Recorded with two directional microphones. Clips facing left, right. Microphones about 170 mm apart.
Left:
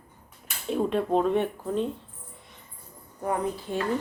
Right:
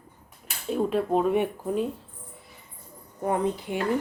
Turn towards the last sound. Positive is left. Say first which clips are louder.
# right 2 dB
turn(degrees=-15)  # may be behind; listen again after turning